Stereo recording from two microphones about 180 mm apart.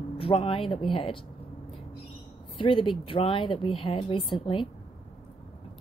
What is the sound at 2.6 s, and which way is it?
Speech, 25° left (ahead or behind).